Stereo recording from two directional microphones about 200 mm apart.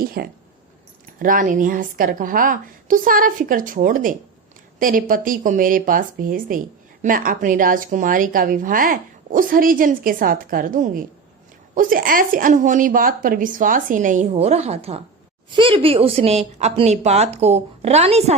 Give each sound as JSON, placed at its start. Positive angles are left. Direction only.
{"t": 0.0, "sound": "a woman's voice", "side_deg": -50}